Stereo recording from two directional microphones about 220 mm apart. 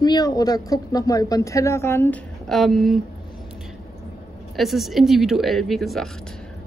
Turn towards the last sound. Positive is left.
turn(degrees=0)  # may be behind; listen again after turning